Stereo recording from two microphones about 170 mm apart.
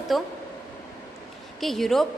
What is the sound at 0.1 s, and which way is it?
Speech, centre (ahead or behind).